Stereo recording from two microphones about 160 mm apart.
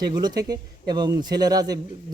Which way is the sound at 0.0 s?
25° right (ahead or behind).